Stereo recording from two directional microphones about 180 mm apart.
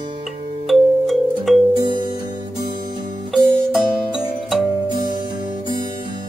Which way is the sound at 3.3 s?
5° right (ahead or behind).